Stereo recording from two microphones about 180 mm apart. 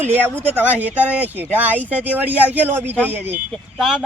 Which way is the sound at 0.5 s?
10° right (ahead or behind).